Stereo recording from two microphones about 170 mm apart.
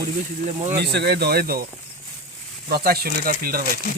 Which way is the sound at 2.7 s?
65° right (ahead or behind).